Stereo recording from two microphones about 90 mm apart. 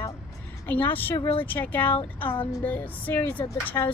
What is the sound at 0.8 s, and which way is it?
A woman's voice, 20° left (ahead or behind).